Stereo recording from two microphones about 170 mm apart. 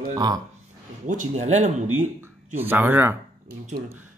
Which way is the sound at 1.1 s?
45° right (ahead or behind).